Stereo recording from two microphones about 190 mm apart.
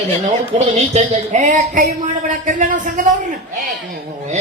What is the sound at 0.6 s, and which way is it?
Speech, 35° right (ahead or behind).